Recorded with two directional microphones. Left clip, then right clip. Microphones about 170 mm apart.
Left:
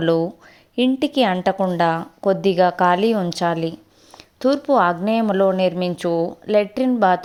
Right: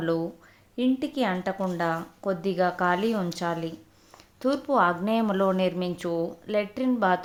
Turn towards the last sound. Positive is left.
turn(degrees=35)  # may be behind; listen again after turning